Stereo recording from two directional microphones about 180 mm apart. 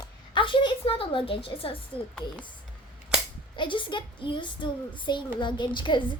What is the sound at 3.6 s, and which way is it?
A woman's voice, 25° left (ahead or behind).